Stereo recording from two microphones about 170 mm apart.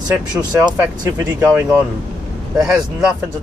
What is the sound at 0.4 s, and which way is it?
Speech, 20° right (ahead or behind).